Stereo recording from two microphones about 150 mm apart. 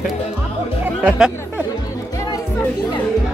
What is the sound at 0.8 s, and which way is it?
Music, 10° right (ahead or behind).